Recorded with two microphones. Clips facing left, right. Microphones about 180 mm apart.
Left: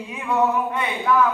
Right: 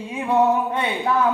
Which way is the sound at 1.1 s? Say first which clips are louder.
Left 3 dB; 30° right (ahead or behind).